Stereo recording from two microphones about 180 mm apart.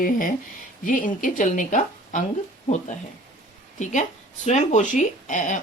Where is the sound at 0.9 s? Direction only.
45° left (ahead or behind).